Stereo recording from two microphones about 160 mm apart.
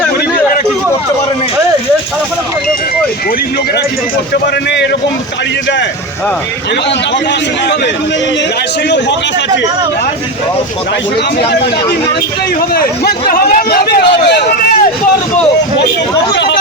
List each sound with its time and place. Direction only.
4.7 s speech: 90° left
12.7 s speech: 70° left (ahead or behind); by 14.8 s 90° left